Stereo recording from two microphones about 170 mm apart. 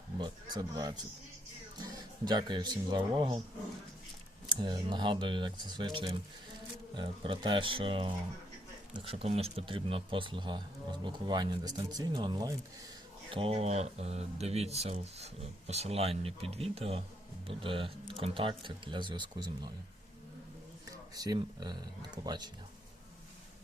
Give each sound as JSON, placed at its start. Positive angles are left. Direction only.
{"t": 0.5, "sound": "speech", "side_deg": -20}
{"t": 4.4, "sound": "speech", "side_deg": -25}
{"t": 13.3, "sound": "speech", "side_deg": -35}
{"t": 21.2, "sound": "speech", "side_deg": -25}